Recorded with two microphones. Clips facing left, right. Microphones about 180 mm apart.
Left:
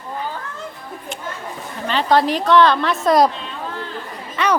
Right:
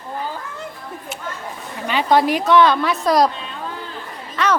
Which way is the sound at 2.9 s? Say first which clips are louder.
Left 1 dB; centre (ahead or behind).